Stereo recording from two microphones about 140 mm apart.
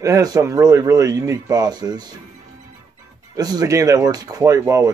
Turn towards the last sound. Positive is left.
turn(degrees=-25)  # may be behind; listen again after turning